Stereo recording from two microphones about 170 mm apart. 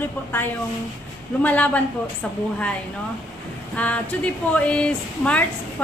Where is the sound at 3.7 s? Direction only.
10° left (ahead or behind).